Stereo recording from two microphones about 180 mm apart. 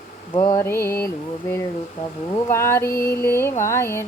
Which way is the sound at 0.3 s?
20° left (ahead or behind).